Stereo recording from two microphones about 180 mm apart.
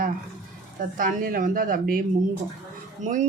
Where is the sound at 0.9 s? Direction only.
50° right (ahead or behind).